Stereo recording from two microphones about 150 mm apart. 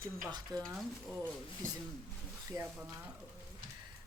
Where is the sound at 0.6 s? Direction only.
5° right (ahead or behind).